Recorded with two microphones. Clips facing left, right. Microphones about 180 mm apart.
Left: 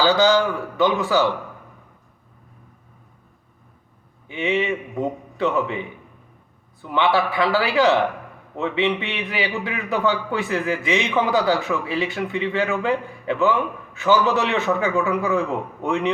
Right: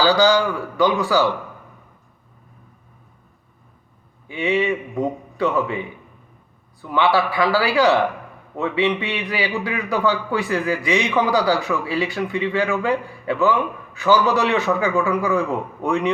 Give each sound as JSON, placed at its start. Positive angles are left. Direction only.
{"t": 0.0, "sound": "a man's voice", "side_deg": 20}
{"t": 4.3, "sound": "a man's voice", "side_deg": 20}
{"t": 6.8, "sound": "a man's voice", "side_deg": 20}